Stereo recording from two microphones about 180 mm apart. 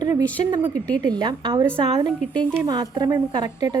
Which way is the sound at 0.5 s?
20° right (ahead or behind).